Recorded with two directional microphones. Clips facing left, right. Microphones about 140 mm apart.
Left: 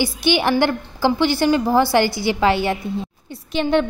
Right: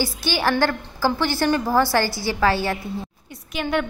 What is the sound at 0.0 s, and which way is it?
A woman's voice, 20° left (ahead or behind).